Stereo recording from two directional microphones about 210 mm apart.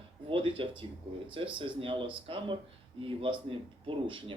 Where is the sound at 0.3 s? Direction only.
25° right (ahead or behind).